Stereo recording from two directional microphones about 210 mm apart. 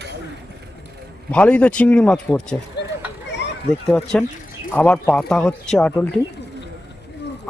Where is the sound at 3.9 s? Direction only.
5° left (ahead or behind).